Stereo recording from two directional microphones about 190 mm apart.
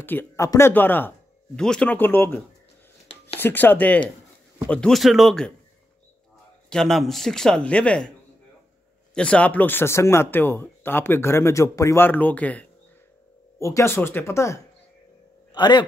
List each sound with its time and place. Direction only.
0.0 s speech: 10° left (ahead or behind)
6.7 s speech: centre (ahead or behind)
9.1 s a man's voice: 5° left (ahead or behind); by 15.8 s 25° left (ahead or behind)